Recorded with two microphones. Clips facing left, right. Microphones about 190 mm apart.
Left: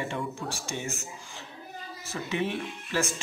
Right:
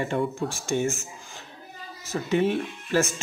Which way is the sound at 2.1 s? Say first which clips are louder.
Right 7 dB; 45° right (ahead or behind).